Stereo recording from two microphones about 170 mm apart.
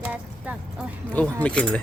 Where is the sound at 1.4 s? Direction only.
5° left (ahead or behind).